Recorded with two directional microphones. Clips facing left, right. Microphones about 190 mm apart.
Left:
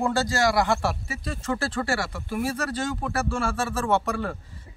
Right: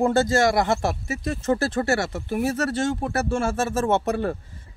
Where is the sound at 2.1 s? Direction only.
45° right (ahead or behind).